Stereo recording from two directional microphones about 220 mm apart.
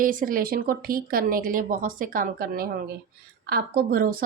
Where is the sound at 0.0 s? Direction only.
40° right (ahead or behind).